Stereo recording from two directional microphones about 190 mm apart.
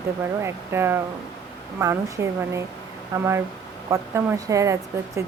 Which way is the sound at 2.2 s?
15° right (ahead or behind).